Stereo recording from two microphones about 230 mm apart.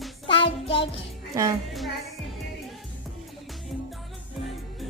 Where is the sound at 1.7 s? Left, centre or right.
Centre.